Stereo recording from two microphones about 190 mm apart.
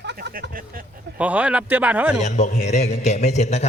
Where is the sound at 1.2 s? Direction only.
10° right (ahead or behind).